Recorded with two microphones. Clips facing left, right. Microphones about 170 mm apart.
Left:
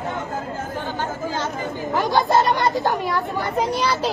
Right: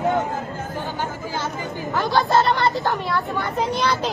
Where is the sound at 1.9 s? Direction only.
15° left (ahead or behind).